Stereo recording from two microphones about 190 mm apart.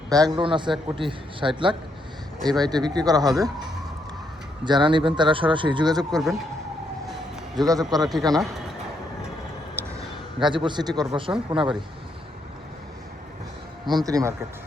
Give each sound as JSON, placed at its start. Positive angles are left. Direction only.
{"t": 0.1, "sound": "speech", "side_deg": -20}
{"t": 4.6, "sound": "speech", "side_deg": -25}
{"t": 7.5, "sound": "speech", "side_deg": -20}
{"t": 10.4, "sound": "speech", "side_deg": -25}
{"t": 13.8, "sound": "speech", "side_deg": -20}